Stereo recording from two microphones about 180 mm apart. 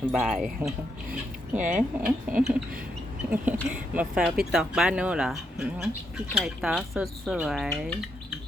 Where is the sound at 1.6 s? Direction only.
45° right (ahead or behind).